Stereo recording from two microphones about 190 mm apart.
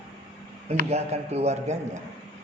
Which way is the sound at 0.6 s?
35° right (ahead or behind).